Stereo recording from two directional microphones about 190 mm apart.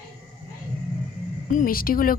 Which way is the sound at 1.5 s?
45° left (ahead or behind).